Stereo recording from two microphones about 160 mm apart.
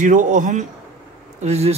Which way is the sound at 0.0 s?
55° right (ahead or behind).